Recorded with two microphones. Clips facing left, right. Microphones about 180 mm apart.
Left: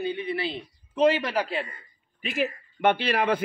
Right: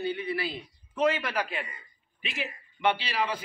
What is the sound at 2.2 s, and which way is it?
A man's voice, 50° left (ahead or behind).